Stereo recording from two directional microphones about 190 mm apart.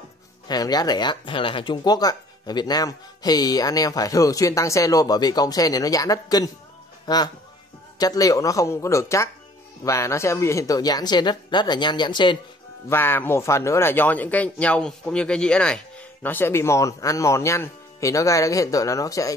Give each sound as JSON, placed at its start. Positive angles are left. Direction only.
{"t": 0.5, "sound": "speech", "side_deg": 20}
{"t": 12.9, "sound": "speech", "side_deg": 10}